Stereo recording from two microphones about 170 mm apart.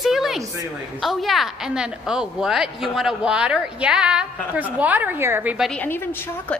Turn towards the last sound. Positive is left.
turn(degrees=10)  # may be behind; listen again after turning